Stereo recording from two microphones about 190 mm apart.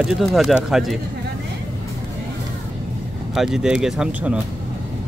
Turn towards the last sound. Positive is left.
turn(degrees=-5)  # may be behind; listen again after turning